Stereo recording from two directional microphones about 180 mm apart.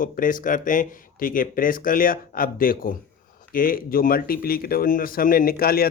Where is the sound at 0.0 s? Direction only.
50° left (ahead or behind).